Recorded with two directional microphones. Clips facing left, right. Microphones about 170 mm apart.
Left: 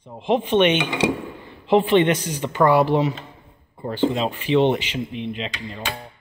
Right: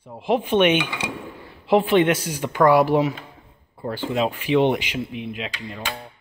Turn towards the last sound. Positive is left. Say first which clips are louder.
# left 1 dB
turn(degrees=0)  # may be behind; listen again after turning